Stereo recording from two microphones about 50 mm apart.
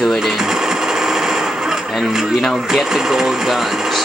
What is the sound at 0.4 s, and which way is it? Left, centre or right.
Sewing machine, centre.